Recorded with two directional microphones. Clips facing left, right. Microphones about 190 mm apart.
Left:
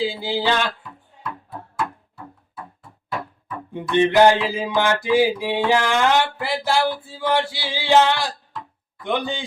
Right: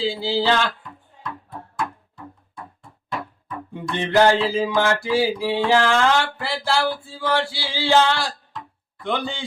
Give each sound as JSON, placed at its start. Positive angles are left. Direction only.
{"t": 0.0, "sound": "music", "side_deg": 15}
{"t": 0.8, "sound": "music", "side_deg": 5}
{"t": 3.7, "sound": "music", "side_deg": 15}